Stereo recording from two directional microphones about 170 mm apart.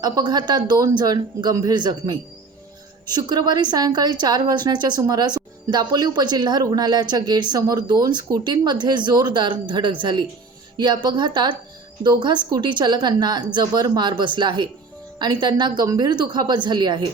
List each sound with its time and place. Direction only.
0.0 s a woman's voice: 25° right (ahead or behind)